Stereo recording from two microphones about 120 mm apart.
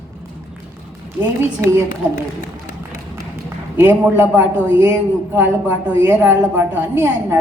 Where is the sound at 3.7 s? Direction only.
20° right (ahead or behind).